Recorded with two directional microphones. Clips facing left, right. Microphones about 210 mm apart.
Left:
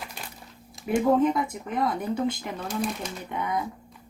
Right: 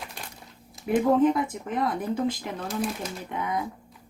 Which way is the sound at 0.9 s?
Centre (ahead or behind).